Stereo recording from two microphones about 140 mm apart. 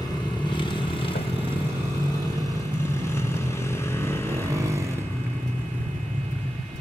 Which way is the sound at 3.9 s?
20° left (ahead or behind).